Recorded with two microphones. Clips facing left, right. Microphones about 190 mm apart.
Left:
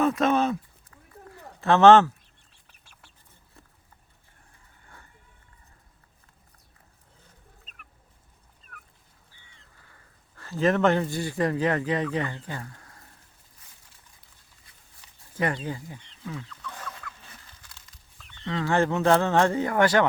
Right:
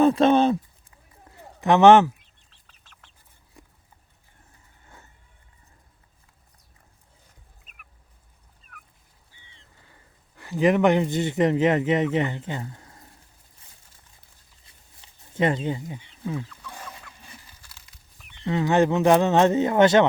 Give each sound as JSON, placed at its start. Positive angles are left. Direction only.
{"t": 0.0, "sound": "a sound", "side_deg": -30}
{"t": 1.6, "sound": "speech", "side_deg": -15}
{"t": 2.5, "sound": "bird", "side_deg": 10}
{"t": 7.6, "sound": "fowl", "side_deg": -10}
{"t": 9.5, "sound": "speech", "side_deg": -20}
{"t": 14.6, "sound": "a sound", "side_deg": -25}
{"t": 16.2, "sound": "rodents", "side_deg": -30}
{"t": 16.5, "sound": "chicken", "side_deg": -10}
{"t": 18.2, "sound": "speech", "side_deg": -15}